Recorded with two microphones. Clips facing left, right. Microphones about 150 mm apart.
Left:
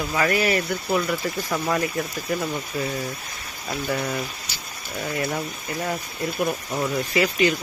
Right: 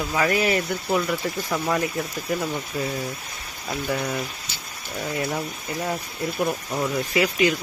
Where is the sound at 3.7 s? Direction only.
Centre (ahead or behind).